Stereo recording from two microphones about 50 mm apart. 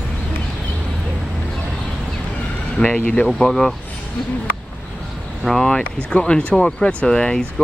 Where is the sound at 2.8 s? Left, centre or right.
Left.